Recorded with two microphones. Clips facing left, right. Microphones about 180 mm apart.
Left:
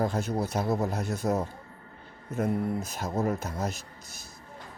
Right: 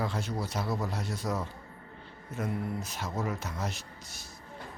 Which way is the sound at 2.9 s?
50° left (ahead or behind).